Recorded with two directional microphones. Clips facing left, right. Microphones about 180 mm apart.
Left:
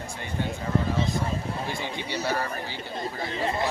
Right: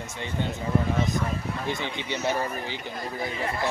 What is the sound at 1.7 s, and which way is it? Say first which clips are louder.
Speech: right 2 dB; 20° right (ahead or behind).